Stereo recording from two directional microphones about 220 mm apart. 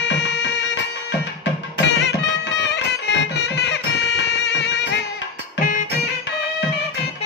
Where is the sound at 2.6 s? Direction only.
50° left (ahead or behind).